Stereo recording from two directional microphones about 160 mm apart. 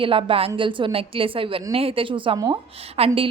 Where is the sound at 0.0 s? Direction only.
35° right (ahead or behind).